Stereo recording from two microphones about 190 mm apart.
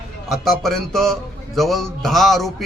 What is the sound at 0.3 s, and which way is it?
A man's voice, centre (ahead or behind).